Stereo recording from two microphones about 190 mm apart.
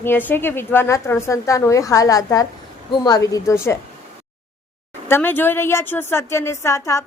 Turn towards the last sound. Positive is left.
turn(degrees=15)  # may be behind; listen again after turning